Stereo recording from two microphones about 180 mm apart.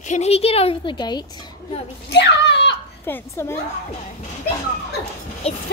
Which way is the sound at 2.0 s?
70° left (ahead or behind).